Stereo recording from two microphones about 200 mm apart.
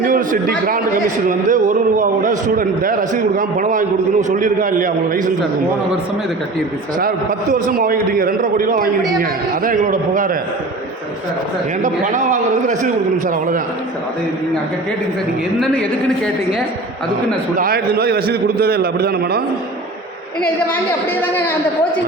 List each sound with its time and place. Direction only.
0.0 s a man's voice: 40° right (ahead or behind)
7.5 s a man's voice: 45° right (ahead or behind)
11.8 s a man's voice: 40° right (ahead or behind)
17.6 s a man's voice: 50° right (ahead or behind)
20.4 s a woman's voice: 10° left (ahead or behind)